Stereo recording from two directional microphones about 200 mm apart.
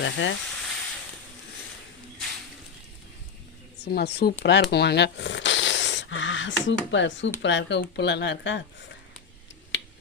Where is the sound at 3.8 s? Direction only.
55° left (ahead or behind).